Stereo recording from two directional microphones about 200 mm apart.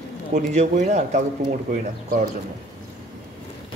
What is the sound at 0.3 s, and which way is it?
A man's voice, 35° right (ahead or behind).